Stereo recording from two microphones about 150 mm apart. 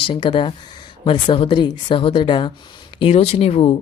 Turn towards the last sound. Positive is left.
turn(degrees=40)  # may be behind; listen again after turning